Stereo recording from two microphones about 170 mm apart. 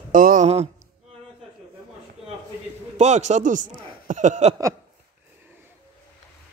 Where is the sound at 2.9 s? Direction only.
40° right (ahead or behind).